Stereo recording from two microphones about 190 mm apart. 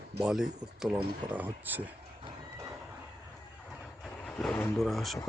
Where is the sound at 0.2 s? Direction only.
5° right (ahead or behind).